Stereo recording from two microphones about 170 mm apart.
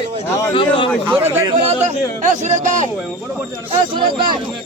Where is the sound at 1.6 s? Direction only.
45° right (ahead or behind).